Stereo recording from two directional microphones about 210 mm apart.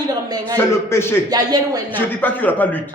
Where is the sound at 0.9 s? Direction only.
10° left (ahead or behind).